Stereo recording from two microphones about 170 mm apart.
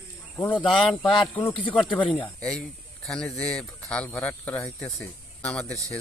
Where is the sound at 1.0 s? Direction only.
30° left (ahead or behind).